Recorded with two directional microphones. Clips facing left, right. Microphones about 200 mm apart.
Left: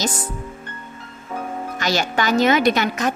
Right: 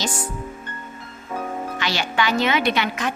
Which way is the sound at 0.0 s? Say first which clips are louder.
Left 2 dB; 40° left (ahead or behind).